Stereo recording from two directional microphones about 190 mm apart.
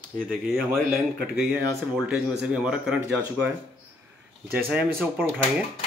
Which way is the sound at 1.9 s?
5° right (ahead or behind).